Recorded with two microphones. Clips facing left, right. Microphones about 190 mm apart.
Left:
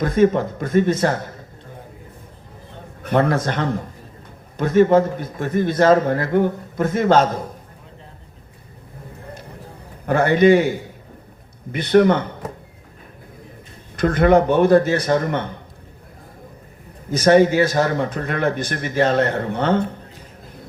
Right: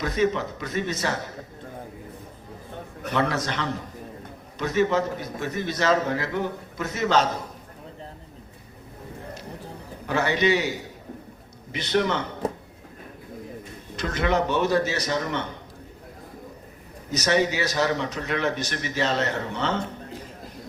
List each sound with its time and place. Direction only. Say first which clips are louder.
0.0 s a man's voice: left 7 dB; 50° left (ahead or behind)
3.1 s a man's voice: left 7 dB; 50° left (ahead or behind)
10.1 s a man's voice: left 9 dB; 55° left (ahead or behind)
13.9 s a man's voice: left 10 dB; 55° left (ahead or behind)
17.1 s a man's voice: left 9 dB; 50° left (ahead or behind)